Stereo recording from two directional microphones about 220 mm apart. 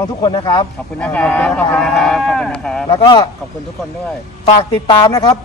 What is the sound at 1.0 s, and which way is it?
Speech, 5° left (ahead or behind).